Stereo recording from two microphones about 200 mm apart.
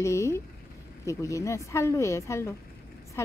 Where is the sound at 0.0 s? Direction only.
15° left (ahead or behind).